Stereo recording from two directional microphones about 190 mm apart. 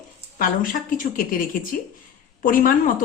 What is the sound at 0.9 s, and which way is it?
Speech, 45° left (ahead or behind).